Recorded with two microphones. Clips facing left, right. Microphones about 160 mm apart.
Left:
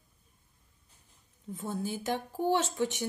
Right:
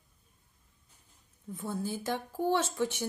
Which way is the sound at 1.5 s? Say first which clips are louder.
Even; 20° left (ahead or behind).